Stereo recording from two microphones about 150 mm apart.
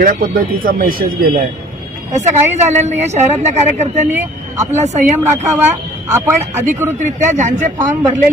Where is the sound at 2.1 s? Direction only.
50° right (ahead or behind).